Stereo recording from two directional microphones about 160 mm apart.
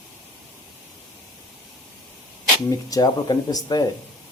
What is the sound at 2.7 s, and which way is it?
Speech, 20° left (ahead or behind).